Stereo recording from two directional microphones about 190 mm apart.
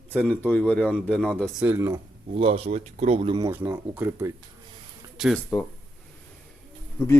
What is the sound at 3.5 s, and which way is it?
Speech, 10° right (ahead or behind).